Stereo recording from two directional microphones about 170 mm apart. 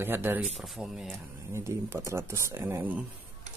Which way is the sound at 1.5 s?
15° right (ahead or behind).